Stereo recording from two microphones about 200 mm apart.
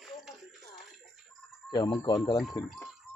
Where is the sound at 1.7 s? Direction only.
20° left (ahead or behind).